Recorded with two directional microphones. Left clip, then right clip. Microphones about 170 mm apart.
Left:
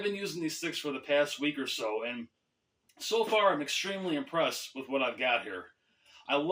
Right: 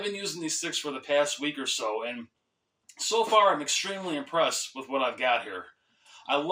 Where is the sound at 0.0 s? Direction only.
15° left (ahead or behind).